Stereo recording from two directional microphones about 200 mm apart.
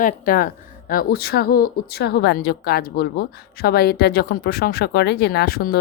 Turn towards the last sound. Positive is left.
turn(degrees=50)  # may be behind; listen again after turning